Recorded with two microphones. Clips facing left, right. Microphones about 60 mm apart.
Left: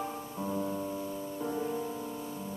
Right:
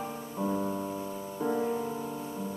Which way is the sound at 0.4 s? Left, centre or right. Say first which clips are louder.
Right 3 dB; centre.